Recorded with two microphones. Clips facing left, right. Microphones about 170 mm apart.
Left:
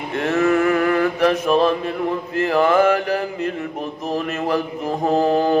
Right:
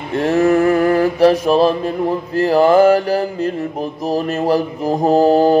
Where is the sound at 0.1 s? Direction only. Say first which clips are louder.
Right 4 dB; 35° right (ahead or behind).